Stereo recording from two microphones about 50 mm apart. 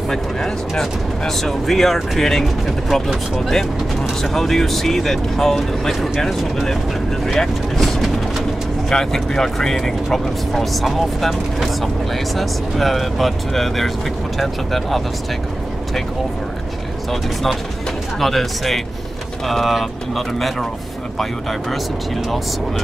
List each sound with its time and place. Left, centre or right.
0.1 s speech: centre
7.2 s vehicle: centre
8.9 s speech: centre
17.1 s speech: centre